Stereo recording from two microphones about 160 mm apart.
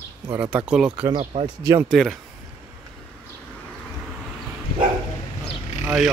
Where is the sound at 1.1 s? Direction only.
35° right (ahead or behind).